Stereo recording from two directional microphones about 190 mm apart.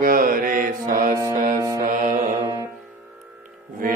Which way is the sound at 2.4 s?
20° right (ahead or behind).